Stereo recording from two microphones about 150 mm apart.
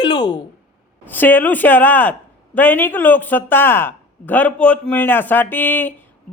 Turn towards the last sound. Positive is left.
turn(degrees=10)  # may be behind; listen again after turning